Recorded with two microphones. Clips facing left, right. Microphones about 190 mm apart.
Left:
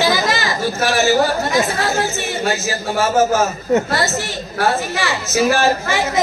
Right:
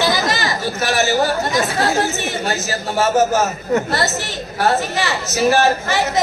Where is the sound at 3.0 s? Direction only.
20° right (ahead or behind).